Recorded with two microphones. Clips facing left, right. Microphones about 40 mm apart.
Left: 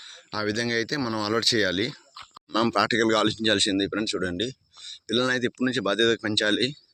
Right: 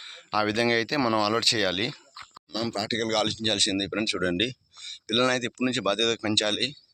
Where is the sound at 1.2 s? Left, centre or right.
Centre.